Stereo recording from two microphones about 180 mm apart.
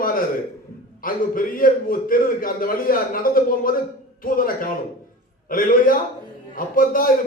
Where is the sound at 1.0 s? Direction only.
50° left (ahead or behind).